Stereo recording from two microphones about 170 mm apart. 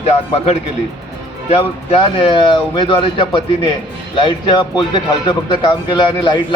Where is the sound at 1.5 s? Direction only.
30° left (ahead or behind).